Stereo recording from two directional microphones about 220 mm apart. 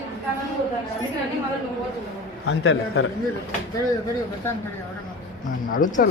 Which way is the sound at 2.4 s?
65° left (ahead or behind).